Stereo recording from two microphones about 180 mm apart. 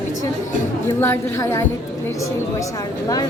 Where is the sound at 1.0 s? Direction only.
15° left (ahead or behind).